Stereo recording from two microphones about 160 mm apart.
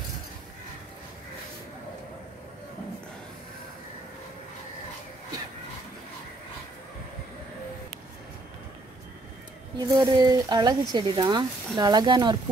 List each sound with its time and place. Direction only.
9.8 s speech: 25° right (ahead or behind)